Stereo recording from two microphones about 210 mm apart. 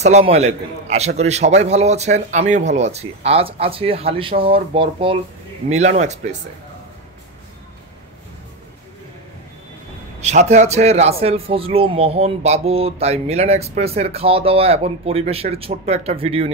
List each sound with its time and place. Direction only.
0.0 s a man's voice: 30° right (ahead or behind)
10.2 s a man's voice: 35° right (ahead or behind)